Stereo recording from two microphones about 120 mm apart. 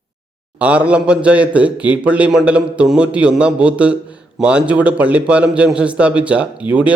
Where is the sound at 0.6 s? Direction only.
10° right (ahead or behind).